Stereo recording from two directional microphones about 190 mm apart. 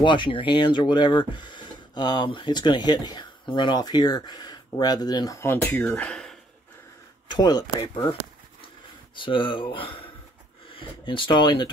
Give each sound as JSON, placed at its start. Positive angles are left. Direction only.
{"t": 0.0, "sound": "speech", "side_deg": 25}
{"t": 7.2, "sound": "speech", "side_deg": 20}